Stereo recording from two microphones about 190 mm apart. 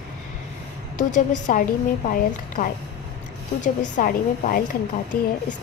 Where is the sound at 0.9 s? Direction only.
40° left (ahead or behind).